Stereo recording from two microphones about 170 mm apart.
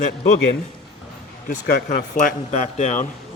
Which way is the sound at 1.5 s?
50° left (ahead or behind).